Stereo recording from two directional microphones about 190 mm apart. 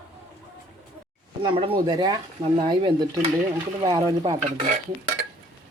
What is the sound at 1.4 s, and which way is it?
Speech, 30° right (ahead or behind).